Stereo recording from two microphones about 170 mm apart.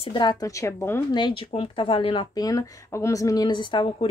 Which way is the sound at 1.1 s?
25° left (ahead or behind).